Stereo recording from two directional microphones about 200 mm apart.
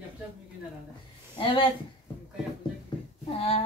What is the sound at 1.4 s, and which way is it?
Speech, 25° left (ahead or behind).